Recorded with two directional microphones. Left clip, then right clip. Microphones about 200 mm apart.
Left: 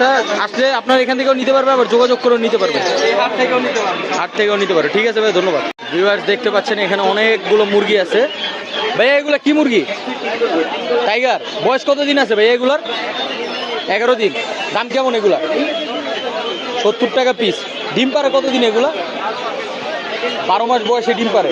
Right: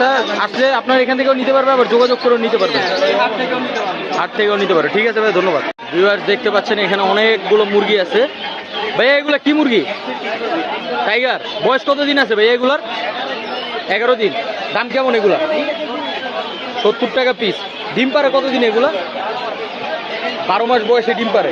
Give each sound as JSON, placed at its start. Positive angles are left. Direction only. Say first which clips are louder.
{"t": 0.0, "sound": "a man's voice", "louder": "left 1 dB", "side_deg": 5}
{"t": 4.2, "sound": "a man's voice", "louder": "right 2 dB", "side_deg": 10}
{"t": 11.1, "sound": "a man's voice", "louder": "left 1 dB", "side_deg": 15}
{"t": 13.9, "sound": "a man's voice", "louder": "even", "side_deg": 15}
{"t": 16.8, "sound": "a man's voice", "louder": "even", "side_deg": 15}
{"t": 20.5, "sound": "a man's voice", "louder": "right 1 dB", "side_deg": 10}